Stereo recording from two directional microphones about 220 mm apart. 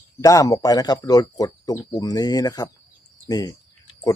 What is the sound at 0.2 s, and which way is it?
Speech, 15° left (ahead or behind).